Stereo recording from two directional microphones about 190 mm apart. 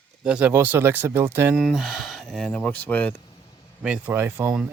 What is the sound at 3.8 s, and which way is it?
Speech, 10° right (ahead or behind).